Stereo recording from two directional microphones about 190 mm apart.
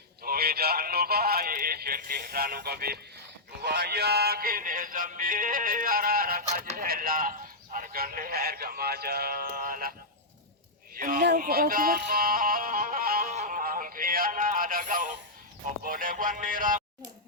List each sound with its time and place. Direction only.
0.2 s synthetic singing: 55° right (ahead or behind)
3.6 s music: 55° right (ahead or behind)
10.9 s music: 45° right (ahead or behind)